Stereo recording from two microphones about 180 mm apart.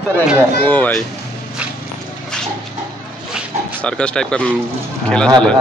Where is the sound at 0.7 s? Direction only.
5° left (ahead or behind).